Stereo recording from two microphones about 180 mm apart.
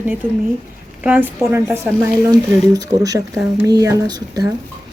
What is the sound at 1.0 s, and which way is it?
Speech, 10° right (ahead or behind).